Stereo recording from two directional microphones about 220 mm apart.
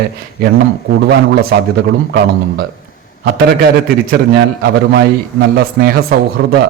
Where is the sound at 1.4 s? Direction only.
45° right (ahead or behind).